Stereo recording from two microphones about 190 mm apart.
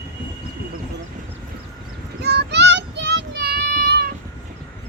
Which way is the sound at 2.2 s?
60° right (ahead or behind).